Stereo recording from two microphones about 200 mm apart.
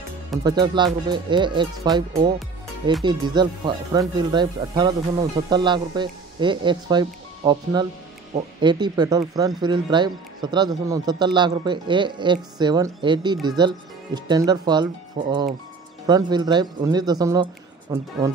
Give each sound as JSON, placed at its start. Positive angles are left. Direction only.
{"t": 0.4, "sound": "speech", "side_deg": -20}
{"t": 16.1, "sound": "speech", "side_deg": -20}